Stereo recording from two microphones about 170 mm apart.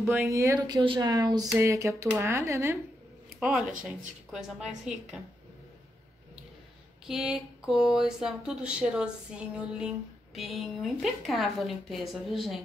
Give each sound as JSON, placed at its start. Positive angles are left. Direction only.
{"t": 0.0, "sound": "speech", "side_deg": -10}
{"t": 3.3, "sound": "speech", "side_deg": -5}
{"t": 7.1, "sound": "speech", "side_deg": -5}